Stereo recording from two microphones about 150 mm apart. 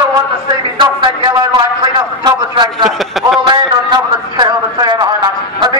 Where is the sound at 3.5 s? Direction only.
30° right (ahead or behind).